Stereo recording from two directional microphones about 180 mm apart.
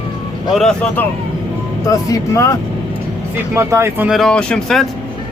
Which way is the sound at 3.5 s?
15° right (ahead or behind).